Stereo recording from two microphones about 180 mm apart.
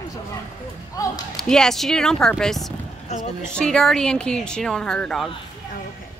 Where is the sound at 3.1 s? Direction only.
40° left (ahead or behind).